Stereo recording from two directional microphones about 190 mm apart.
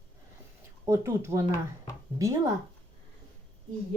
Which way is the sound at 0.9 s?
15° right (ahead or behind).